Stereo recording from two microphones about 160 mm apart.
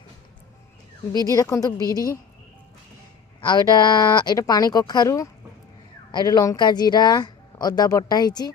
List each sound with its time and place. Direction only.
1.3 s speech: 20° left (ahead or behind)
3.4 s speech: 25° left (ahead or behind)